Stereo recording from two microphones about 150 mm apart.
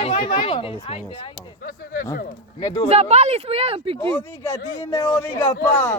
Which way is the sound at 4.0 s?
15° left (ahead or behind).